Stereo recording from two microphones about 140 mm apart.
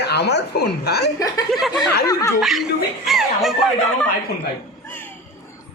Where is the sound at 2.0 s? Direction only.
25° left (ahead or behind).